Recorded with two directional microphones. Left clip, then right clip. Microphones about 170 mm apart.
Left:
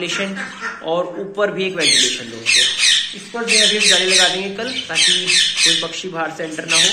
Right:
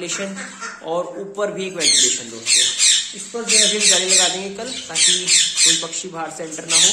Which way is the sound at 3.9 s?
15° right (ahead or behind).